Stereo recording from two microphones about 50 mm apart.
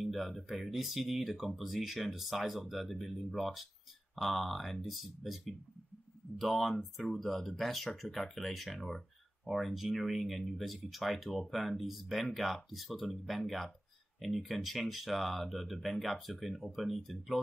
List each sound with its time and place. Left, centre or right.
0.0 s speech: centre